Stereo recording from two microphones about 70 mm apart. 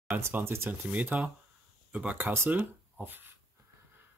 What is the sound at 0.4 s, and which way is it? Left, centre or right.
Speech, right.